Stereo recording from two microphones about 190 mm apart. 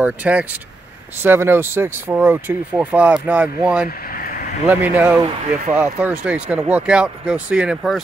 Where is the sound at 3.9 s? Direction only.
50° left (ahead or behind).